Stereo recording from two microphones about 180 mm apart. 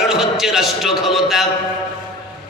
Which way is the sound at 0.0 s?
Centre (ahead or behind).